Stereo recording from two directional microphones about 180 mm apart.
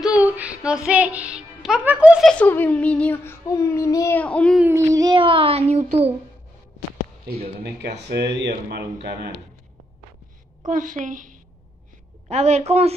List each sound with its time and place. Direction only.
0.2 s female singing: 10° right (ahead or behind)
0.8 s a child's voice: 5° right (ahead or behind)
2.3 s a child's voice: 10° left (ahead or behind)
4.6 s speech: 15° right (ahead or behind); by 6.1 s 35° right (ahead or behind)
8.1 s speech: 65° right (ahead or behind)
10.7 s a woman's voice: 45° right (ahead or behind)